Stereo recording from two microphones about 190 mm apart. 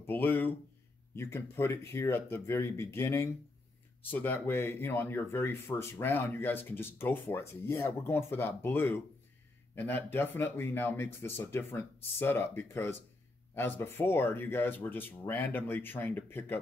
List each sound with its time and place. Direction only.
0.0 s speech: 10° left (ahead or behind)